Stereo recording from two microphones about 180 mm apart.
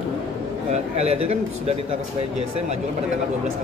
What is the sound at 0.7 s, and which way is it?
Speech, 35° right (ahead or behind).